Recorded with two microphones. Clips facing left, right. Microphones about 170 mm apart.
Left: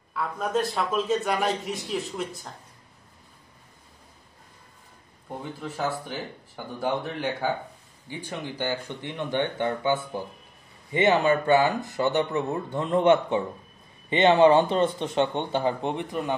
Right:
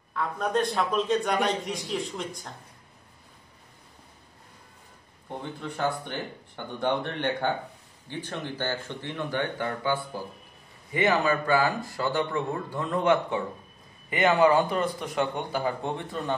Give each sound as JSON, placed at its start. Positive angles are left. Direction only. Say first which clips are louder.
{"t": 0.1, "sound": "a man's voice", "louder": "even", "side_deg": 5}
{"t": 5.4, "sound": "a man's voice", "louder": "right 1 dB", "side_deg": 5}